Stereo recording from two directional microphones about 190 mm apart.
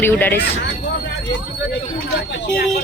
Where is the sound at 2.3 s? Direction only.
70° left (ahead or behind).